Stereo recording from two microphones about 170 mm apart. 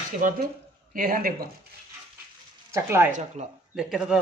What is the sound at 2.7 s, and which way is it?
Speech, 15° right (ahead or behind).